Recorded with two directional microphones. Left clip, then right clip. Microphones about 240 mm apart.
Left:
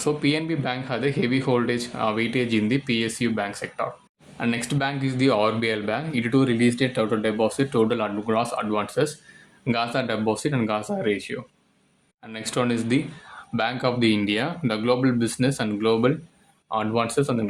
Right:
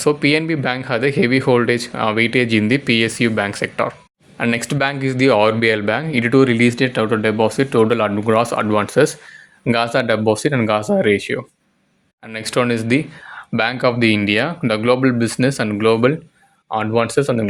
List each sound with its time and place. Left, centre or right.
0.0 s speech: right